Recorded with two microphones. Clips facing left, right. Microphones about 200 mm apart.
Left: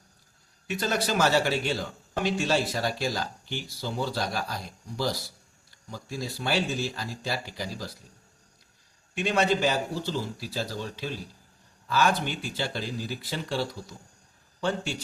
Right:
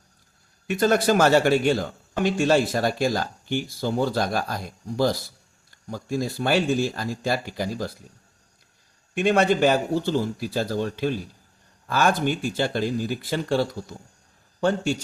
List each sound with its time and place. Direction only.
0.7 s a man's voice: 50° right (ahead or behind)
9.1 s a man's voice: 55° right (ahead or behind)